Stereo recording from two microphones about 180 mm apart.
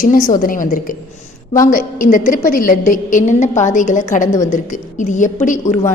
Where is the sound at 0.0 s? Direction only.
50° left (ahead or behind).